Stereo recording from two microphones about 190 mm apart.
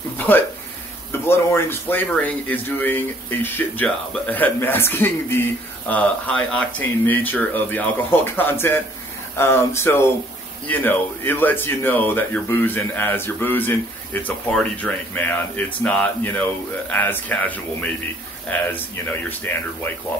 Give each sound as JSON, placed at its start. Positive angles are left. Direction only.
{"t": 1.2, "sound": "speech", "side_deg": 10}